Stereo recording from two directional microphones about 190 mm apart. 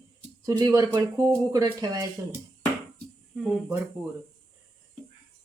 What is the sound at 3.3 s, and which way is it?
Speech, centre (ahead or behind).